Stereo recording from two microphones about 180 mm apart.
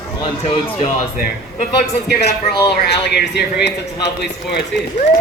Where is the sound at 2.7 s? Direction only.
65° left (ahead or behind).